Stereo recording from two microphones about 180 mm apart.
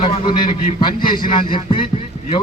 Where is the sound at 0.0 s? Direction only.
25° left (ahead or behind).